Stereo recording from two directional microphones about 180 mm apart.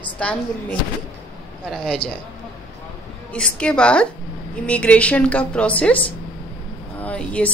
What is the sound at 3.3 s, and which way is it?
A woman's voice, 5° left (ahead or behind).